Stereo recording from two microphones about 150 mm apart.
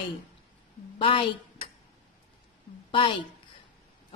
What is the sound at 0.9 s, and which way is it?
Speech, 35° left (ahead or behind).